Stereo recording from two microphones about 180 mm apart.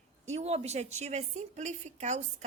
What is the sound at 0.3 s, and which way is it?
A woman's voice, 35° right (ahead or behind).